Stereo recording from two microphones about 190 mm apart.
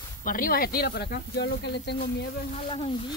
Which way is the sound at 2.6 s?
30° left (ahead or behind).